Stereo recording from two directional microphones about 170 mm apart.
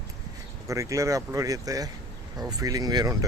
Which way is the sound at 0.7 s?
20° right (ahead or behind).